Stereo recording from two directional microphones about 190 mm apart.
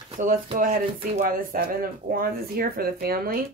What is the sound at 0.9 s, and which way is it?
A woman's voice, 40° right (ahead or behind).